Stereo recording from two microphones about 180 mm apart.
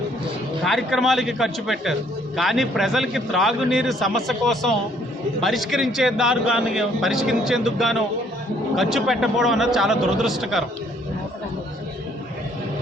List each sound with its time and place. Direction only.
0.6 s a man's voice: centre (ahead or behind)